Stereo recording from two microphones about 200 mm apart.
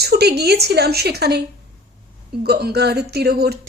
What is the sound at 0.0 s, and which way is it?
Speech, 55° right (ahead or behind).